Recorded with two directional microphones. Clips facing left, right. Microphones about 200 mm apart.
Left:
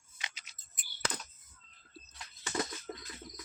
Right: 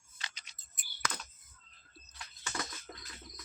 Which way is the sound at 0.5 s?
5° left (ahead or behind).